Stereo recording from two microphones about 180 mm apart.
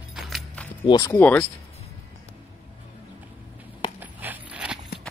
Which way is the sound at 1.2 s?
10° left (ahead or behind).